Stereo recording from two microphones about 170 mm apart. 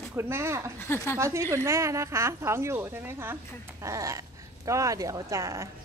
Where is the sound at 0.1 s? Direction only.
15° right (ahead or behind).